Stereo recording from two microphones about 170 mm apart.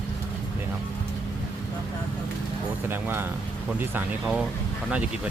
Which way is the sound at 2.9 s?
15° right (ahead or behind).